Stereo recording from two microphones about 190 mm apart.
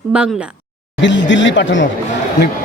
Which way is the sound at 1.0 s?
75° left (ahead or behind).